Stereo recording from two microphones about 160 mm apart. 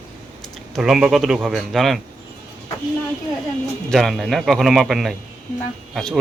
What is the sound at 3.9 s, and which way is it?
Speech, centre (ahead or behind).